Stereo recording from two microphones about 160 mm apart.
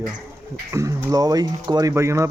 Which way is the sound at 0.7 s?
20° right (ahead or behind).